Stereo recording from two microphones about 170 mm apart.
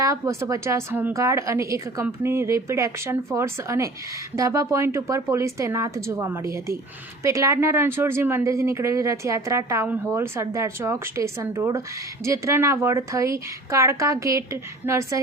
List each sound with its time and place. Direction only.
0.0 s speech: 20° right (ahead or behind)